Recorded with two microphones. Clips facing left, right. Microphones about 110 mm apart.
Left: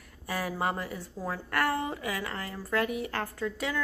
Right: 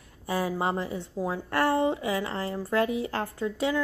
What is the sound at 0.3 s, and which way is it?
A woman's voice, 25° right (ahead or behind).